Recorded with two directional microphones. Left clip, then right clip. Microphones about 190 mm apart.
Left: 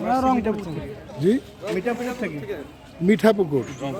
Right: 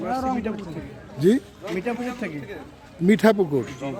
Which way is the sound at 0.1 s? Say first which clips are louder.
Left 6 dB; 45° left (ahead or behind).